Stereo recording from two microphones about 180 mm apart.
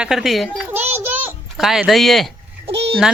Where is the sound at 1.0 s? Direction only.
10° right (ahead or behind).